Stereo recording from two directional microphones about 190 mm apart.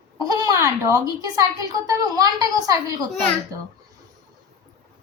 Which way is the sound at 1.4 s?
20° right (ahead or behind).